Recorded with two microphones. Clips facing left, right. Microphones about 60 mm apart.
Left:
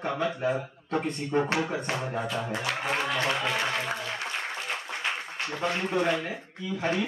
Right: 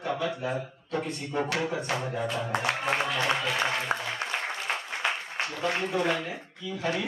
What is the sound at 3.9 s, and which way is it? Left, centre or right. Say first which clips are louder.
Speech: right 3 dB; right.